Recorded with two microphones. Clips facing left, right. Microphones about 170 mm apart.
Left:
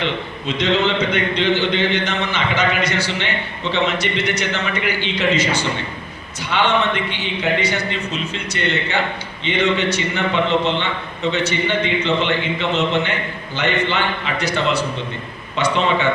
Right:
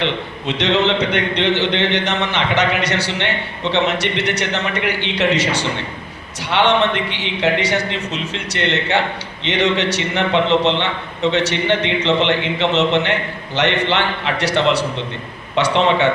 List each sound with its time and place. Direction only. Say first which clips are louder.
0.0 s a man's voice: right 2 dB; 70° right (ahead or behind)
6.7 s a man's voice: right 3 dB; 85° right
10.5 s a man's voice: right 3 dB; 25° right (ahead or behind)
10.8 s a man's voice: right 2 dB; 80° right